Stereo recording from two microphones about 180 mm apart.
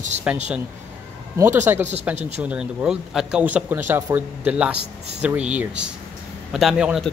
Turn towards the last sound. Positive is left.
turn(degrees=0)  # may be behind; listen again after turning